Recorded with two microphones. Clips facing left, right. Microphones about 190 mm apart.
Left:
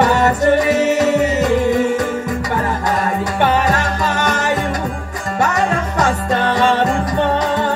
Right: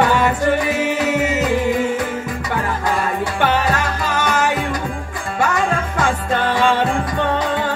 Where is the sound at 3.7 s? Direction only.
45° left (ahead or behind).